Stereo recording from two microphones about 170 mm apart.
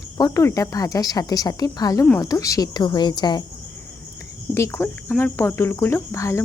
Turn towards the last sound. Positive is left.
turn(degrees=15)  # may be behind; listen again after turning